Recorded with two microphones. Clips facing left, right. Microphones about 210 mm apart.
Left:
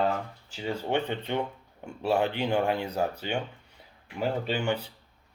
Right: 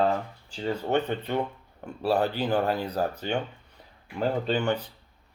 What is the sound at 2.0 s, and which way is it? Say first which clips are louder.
Speech: right 1 dB; 35° right (ahead or behind).